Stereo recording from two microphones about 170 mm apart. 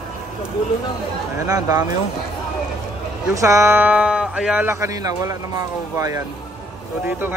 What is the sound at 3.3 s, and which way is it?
Speech, 15° right (ahead or behind).